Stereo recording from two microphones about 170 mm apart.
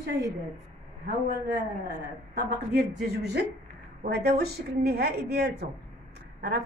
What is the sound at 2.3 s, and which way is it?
Speech, 65° right (ahead or behind).